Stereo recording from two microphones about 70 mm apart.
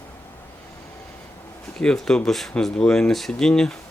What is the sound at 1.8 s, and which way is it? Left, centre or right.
Speech, centre.